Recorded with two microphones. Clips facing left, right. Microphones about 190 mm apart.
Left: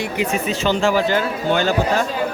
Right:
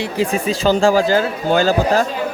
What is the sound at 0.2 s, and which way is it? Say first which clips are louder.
Speech: right 4 dB; 35° right (ahead or behind).